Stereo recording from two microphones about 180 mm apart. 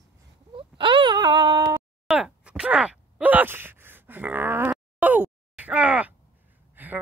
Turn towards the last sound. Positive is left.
turn(degrees=-10)  # may be behind; listen again after turning